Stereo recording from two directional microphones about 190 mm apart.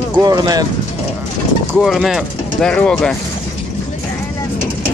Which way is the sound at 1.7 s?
Centre (ahead or behind).